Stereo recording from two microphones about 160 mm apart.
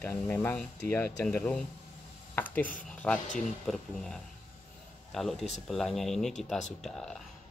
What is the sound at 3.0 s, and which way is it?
Speech, 5° left (ahead or behind).